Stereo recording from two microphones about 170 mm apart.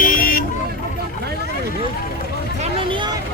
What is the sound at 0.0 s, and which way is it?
Vehicle, 55° left (ahead or behind).